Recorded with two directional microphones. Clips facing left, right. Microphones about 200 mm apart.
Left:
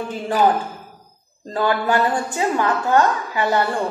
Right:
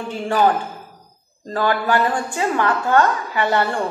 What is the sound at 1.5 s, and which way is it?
A woman's voice, 20° left (ahead or behind).